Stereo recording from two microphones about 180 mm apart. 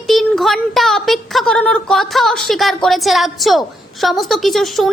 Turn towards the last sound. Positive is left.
turn(degrees=0)  # may be behind; listen again after turning